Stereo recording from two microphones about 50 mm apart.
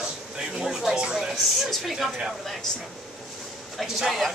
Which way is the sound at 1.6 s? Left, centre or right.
Centre.